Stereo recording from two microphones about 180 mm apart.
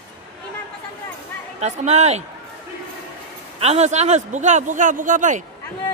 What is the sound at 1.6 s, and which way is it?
Speech, 40° right (ahead or behind).